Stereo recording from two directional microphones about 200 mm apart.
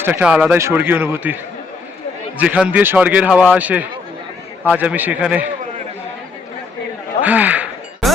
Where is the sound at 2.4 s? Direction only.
5° right (ahead or behind).